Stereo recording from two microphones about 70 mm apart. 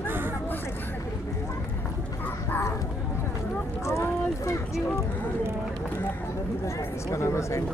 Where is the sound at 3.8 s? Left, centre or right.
Left.